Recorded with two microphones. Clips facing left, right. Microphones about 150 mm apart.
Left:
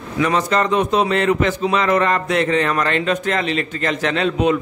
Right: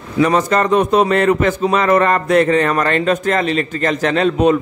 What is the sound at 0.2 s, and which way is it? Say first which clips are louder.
A man's voice: right 4 dB; 45° right (ahead or behind).